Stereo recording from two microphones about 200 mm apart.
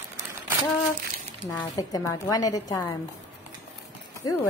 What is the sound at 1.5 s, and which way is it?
A woman's voice, 15° left (ahead or behind).